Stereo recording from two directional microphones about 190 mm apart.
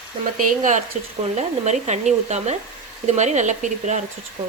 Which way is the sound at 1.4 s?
35° right (ahead or behind).